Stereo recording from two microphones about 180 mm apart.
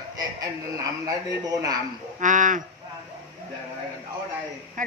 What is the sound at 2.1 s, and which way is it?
Speech, 45° right (ahead or behind).